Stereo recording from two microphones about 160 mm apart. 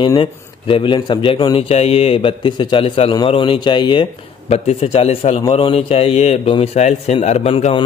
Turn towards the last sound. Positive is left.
turn(degrees=35)  # may be behind; listen again after turning